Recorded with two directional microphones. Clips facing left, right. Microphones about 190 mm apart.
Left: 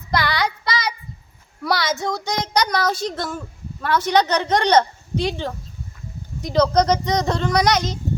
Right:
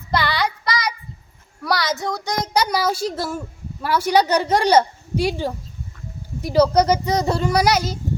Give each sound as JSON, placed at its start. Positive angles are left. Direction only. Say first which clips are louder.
{"t": 0.1, "sound": "child singing", "louder": "even", "side_deg": 15}
{"t": 1.7, "sound": "a child's voice", "louder": "even", "side_deg": 25}
{"t": 2.5, "sound": "a child's voice", "louder": "right 1 dB", "side_deg": -5}